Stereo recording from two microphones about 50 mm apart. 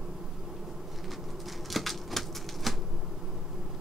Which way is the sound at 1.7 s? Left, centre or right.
Centre.